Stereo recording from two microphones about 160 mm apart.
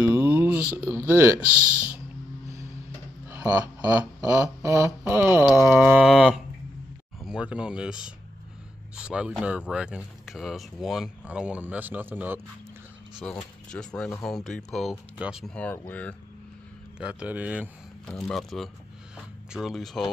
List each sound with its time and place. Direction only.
0.0 s mantra: 10° right (ahead or behind)
0.7 s speech: 10° right (ahead or behind)
1.5 s speech: 15° left (ahead or behind)
3.3 s speech: 10° right (ahead or behind)
13.7 s speech: 5° left (ahead or behind)
15.5 s speech: 10° left (ahead or behind)
17.0 s speech: 5° right (ahead or behind)
18.0 s speech: centre (ahead or behind)